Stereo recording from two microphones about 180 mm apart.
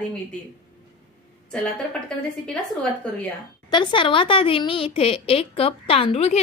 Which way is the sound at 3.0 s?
5° left (ahead or behind).